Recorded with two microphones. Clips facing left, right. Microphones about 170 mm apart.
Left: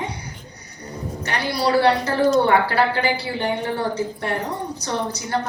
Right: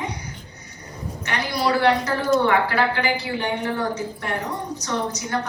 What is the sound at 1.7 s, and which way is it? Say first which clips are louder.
A woman's voice: left 3 dB; 30° left (ahead or behind).